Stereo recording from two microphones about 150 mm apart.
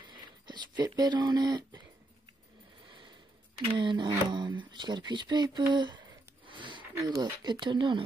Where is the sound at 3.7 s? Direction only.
30° right (ahead or behind).